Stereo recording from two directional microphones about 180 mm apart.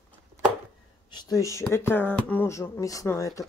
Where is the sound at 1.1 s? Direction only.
20° left (ahead or behind).